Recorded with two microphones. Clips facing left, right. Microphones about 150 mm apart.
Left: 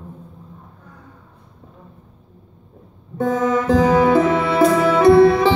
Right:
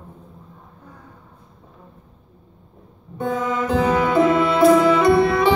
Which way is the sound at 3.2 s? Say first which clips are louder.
Left 5 dB; 35° left (ahead or behind).